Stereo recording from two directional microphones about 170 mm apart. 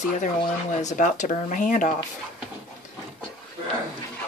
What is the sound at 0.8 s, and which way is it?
Speech, 50° left (ahead or behind).